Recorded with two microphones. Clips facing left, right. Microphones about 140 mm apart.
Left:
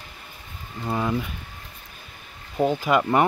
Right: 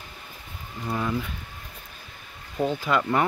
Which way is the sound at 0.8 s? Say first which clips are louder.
Left 3 dB; 20° left (ahead or behind).